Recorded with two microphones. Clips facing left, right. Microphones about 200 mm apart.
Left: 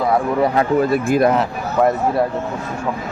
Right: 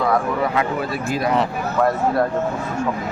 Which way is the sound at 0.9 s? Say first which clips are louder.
Left 8 dB; 50° left (ahead or behind).